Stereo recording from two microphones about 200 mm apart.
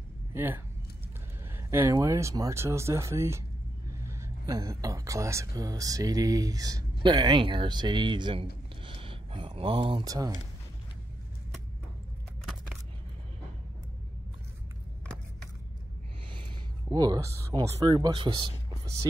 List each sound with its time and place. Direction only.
0.3 s speech: 10° right (ahead or behind)
16.9 s speech: 20° right (ahead or behind)